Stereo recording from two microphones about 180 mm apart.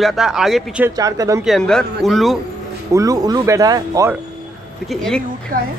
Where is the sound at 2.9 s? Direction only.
20° right (ahead or behind).